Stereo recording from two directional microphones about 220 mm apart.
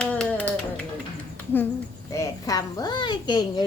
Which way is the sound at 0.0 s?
5° left (ahead or behind).